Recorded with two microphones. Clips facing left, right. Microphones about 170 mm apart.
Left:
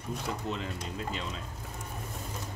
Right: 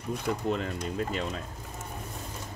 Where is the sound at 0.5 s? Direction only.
55° right (ahead or behind).